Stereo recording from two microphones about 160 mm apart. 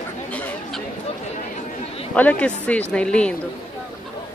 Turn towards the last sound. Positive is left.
turn(degrees=5)  # may be behind; listen again after turning